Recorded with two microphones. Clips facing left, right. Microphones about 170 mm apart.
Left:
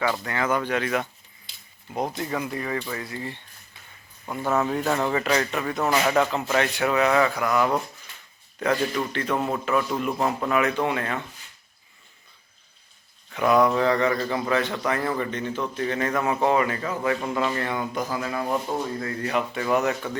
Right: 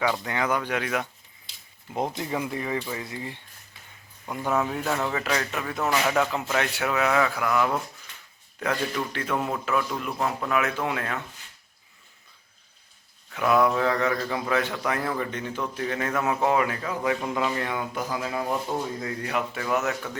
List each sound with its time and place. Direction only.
0.3 s a man's voice: 15° right (ahead or behind)
2.1 s a man's voice: 25° right (ahead or behind); by 6.2 s 5° left (ahead or behind)
6.3 s a man's voice: 5° right (ahead or behind)
9.1 s a man's voice: 5° right (ahead or behind)
13.3 s a man's voice: centre (ahead or behind)